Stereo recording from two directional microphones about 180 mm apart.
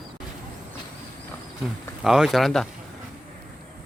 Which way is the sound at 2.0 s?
Centre (ahead or behind).